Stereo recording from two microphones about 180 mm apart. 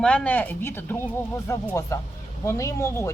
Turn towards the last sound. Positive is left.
turn(degrees=15)  # may be behind; listen again after turning